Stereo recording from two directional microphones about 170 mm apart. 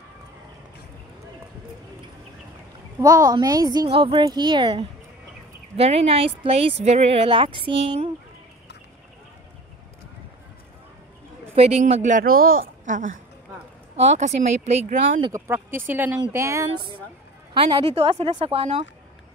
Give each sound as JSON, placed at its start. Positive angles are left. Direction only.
{"t": 3.0, "sound": "a woman's voice", "side_deg": -20}
{"t": 11.5, "sound": "speech", "side_deg": -35}
{"t": 15.3, "sound": "speech", "side_deg": -15}
{"t": 17.6, "sound": "speech", "side_deg": -30}